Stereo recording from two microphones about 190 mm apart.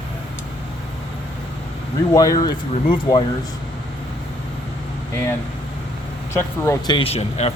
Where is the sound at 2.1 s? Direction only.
20° left (ahead or behind).